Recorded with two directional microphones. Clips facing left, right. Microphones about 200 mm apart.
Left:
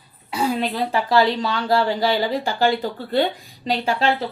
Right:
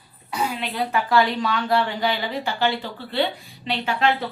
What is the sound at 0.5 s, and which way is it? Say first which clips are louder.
Speech: left 3 dB; 35° left (ahead or behind).